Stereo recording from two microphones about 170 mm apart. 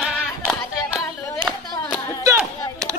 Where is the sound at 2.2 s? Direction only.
20° right (ahead or behind).